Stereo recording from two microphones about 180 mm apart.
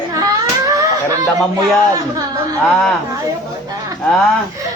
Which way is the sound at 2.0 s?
20° right (ahead or behind).